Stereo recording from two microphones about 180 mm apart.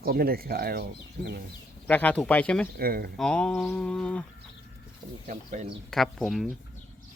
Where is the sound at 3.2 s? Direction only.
5° left (ahead or behind).